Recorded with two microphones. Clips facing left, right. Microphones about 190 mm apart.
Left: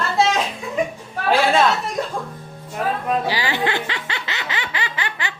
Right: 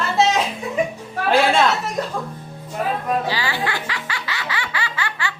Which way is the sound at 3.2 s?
15° left (ahead or behind).